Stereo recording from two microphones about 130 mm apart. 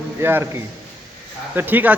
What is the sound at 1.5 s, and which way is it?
Speech, 15° right (ahead or behind).